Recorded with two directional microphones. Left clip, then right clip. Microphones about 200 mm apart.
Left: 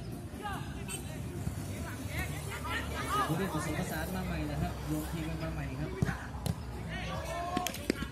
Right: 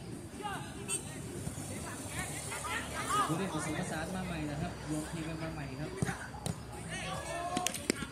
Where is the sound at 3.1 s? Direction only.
20° right (ahead or behind).